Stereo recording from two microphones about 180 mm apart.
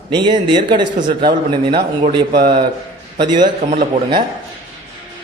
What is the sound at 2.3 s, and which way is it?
Speech, 60° right (ahead or behind).